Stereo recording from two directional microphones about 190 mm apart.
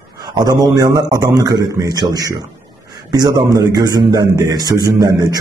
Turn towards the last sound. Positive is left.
turn(degrees=-20)  # may be behind; listen again after turning